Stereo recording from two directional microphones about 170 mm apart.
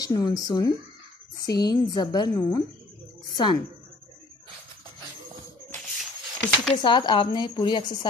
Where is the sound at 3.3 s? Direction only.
25° left (ahead or behind).